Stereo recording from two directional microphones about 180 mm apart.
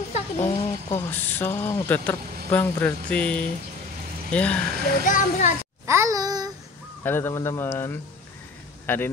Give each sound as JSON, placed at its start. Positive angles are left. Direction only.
{"t": 0.1, "sound": "a sound", "side_deg": 40}
{"t": 1.1, "sound": "speech", "side_deg": 10}
{"t": 5.0, "sound": "speech", "side_deg": 45}
{"t": 5.9, "sound": "child singing", "side_deg": -15}
{"t": 7.0, "sound": "speech", "side_deg": 10}